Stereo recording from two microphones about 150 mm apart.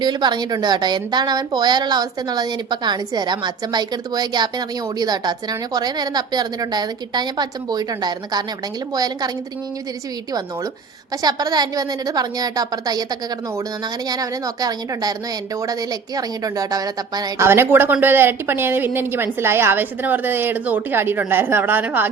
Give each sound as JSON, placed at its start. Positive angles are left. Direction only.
{"t": 0.0, "sound": "a woman's voice", "side_deg": -30}
{"t": 11.2, "sound": "a woman's voice", "side_deg": -25}